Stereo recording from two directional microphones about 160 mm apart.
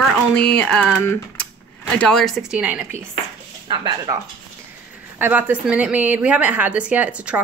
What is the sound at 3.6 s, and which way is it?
Speech, 30° right (ahead or behind).